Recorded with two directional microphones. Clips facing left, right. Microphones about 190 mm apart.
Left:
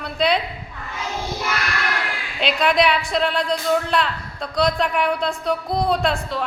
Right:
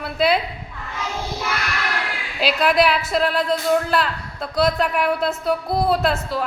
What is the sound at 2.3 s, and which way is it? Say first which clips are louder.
A woman's voice: right 1 dB; 5° right (ahead or behind).